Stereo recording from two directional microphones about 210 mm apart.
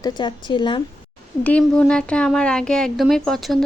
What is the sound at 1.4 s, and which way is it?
Speech, 5° left (ahead or behind).